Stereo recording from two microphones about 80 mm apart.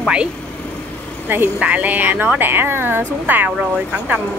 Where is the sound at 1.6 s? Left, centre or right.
Centre.